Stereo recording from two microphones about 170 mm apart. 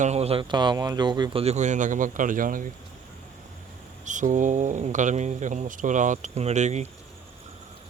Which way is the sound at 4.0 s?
45° right (ahead or behind).